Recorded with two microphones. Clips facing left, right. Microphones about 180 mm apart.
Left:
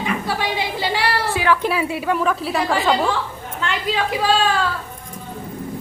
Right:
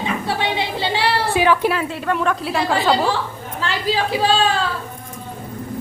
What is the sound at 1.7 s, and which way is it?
A woman's voice, 10° left (ahead or behind).